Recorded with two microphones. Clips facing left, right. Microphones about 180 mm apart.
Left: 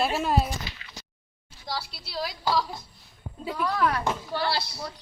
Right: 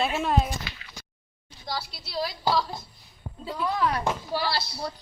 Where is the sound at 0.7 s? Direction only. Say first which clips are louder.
Right 1 dB; 60° right (ahead or behind).